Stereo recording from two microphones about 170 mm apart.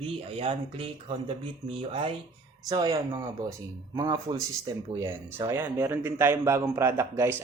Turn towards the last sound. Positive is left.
turn(degrees=-15)  # may be behind; listen again after turning